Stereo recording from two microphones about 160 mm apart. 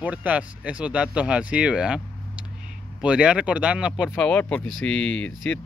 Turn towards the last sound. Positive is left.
turn(degrees=5)  # may be behind; listen again after turning